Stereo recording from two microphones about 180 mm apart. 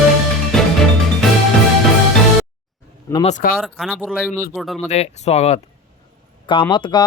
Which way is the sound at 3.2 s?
45° left (ahead or behind).